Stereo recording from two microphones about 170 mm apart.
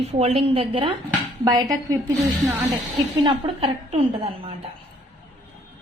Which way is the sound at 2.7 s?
25° right (ahead or behind).